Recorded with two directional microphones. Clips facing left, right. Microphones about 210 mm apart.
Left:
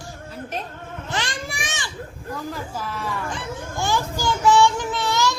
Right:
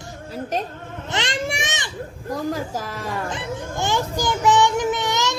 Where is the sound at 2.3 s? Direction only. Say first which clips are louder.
Right 6 dB; 40° right (ahead or behind).